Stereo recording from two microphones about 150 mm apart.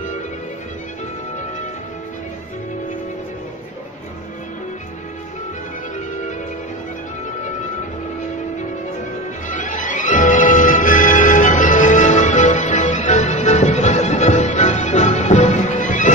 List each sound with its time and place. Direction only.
9.5 s music: 55° left (ahead or behind)